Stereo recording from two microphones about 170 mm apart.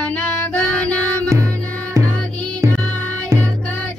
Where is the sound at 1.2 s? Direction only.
15° right (ahead or behind).